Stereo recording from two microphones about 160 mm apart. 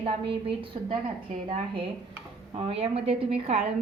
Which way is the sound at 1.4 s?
35° right (ahead or behind).